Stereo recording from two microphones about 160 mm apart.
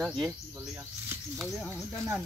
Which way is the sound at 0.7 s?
15° right (ahead or behind).